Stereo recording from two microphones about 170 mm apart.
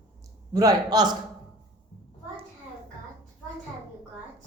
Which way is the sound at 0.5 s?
20° right (ahead or behind).